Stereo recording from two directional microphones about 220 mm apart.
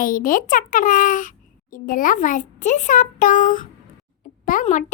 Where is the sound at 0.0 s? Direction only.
40° left (ahead or behind).